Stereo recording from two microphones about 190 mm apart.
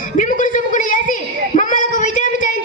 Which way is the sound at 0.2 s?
45° left (ahead or behind).